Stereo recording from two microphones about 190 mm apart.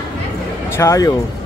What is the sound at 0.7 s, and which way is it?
Speech, 15° left (ahead or behind).